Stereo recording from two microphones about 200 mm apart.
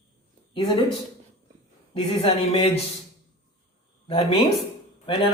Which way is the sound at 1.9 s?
25° left (ahead or behind).